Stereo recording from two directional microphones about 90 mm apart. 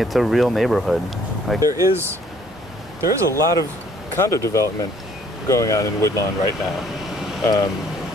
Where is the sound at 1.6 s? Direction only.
40° right (ahead or behind).